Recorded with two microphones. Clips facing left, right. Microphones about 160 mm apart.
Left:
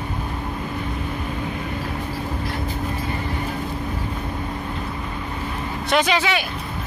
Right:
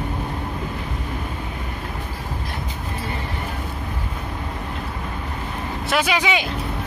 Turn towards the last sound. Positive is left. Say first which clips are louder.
# left 1 dB
turn(degrees=-15)  # may be behind; listen again after turning